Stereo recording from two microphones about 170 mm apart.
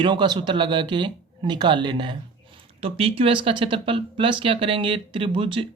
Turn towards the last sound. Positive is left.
turn(degrees=-30)  # may be behind; listen again after turning